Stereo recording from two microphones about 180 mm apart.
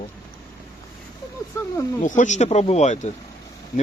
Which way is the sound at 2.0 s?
45° left (ahead or behind).